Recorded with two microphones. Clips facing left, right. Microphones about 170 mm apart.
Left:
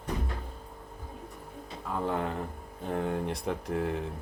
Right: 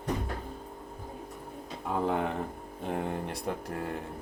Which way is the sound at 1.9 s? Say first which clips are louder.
Right 2 dB; 10° right (ahead or behind).